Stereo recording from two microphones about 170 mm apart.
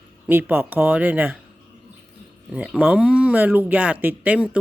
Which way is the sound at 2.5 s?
10° right (ahead or behind).